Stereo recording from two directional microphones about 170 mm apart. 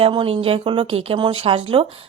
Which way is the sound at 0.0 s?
30° right (ahead or behind).